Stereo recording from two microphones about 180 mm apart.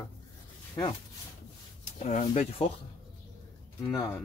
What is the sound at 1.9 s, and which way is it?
Speech, 40° left (ahead or behind).